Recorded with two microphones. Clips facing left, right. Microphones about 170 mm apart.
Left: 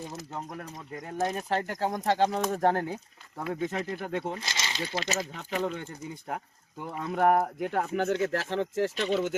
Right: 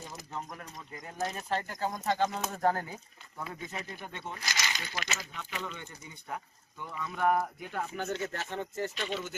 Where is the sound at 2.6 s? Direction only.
70° left (ahead or behind); by 4.2 s 90° left.